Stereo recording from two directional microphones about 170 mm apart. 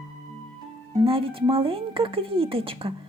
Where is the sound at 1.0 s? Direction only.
30° right (ahead or behind).